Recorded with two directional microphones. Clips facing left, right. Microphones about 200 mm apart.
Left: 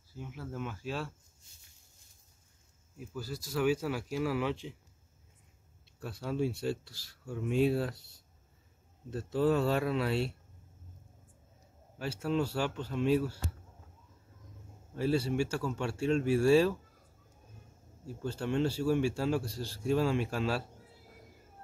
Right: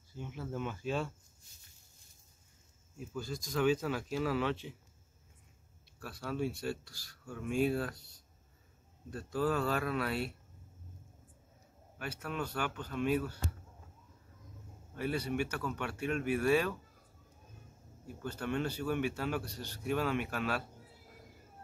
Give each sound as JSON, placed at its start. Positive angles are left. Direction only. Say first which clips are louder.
{"t": 0.1, "sound": "speech", "louder": "right 1 dB", "side_deg": 5}
{"t": 3.0, "sound": "speech", "louder": "even", "side_deg": 5}
{"t": 5.9, "sound": "a man's voice", "louder": "left 3 dB", "side_deg": 25}
{"t": 9.1, "sound": "a man's voice", "louder": "left 5 dB", "side_deg": 25}
{"t": 12.0, "sound": "a man's voice", "louder": "left 7 dB", "side_deg": 25}
{"t": 15.0, "sound": "a man's voice", "louder": "left 5 dB", "side_deg": 30}
{"t": 18.0, "sound": "a man's voice", "louder": "left 3 dB", "side_deg": 25}